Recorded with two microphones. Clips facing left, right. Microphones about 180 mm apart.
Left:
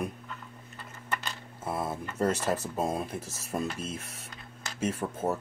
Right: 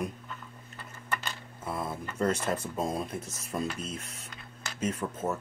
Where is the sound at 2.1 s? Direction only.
5° left (ahead or behind).